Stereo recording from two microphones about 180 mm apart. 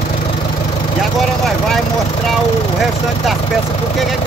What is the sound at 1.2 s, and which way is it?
A man's voice, centre (ahead or behind).